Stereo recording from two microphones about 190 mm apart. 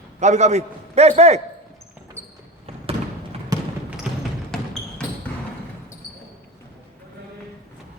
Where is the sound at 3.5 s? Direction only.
20° right (ahead or behind).